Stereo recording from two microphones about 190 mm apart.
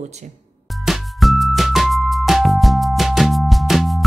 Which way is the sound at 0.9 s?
Centre (ahead or behind).